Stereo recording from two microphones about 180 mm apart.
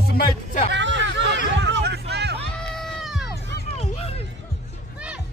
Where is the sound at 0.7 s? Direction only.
80° right.